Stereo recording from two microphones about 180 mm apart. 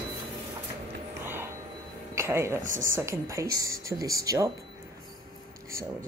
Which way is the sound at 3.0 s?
15° right (ahead or behind).